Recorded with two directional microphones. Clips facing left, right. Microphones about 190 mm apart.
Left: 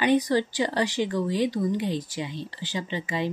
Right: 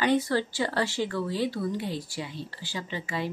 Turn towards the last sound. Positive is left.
turn(degrees=20)  # may be behind; listen again after turning